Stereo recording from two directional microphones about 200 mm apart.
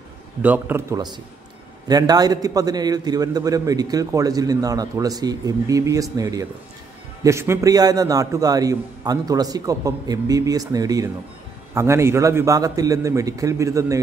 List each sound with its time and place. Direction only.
0.4 s a man's voice: 10° right (ahead or behind)